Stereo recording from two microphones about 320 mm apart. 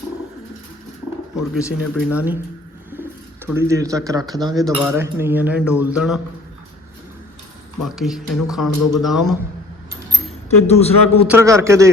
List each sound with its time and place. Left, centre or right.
1.6 s speech: centre
7.9 s speech: centre
10.8 s a man's voice: centre
11.3 s speech: centre